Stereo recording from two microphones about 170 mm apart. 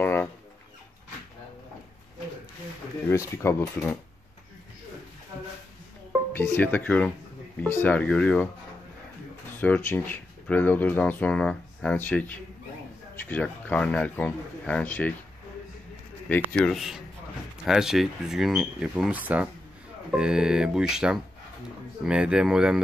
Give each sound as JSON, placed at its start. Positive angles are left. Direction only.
{"t": 0.0, "sound": "a sound", "side_deg": 10}
{"t": 3.1, "sound": "speech", "side_deg": 15}
{"t": 6.3, "sound": "speech", "side_deg": 10}
{"t": 9.6, "sound": "speech", "side_deg": 10}
{"t": 16.5, "sound": "speech", "side_deg": 0}